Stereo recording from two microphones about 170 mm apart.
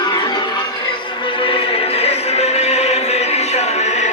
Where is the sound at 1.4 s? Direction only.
35° left (ahead or behind).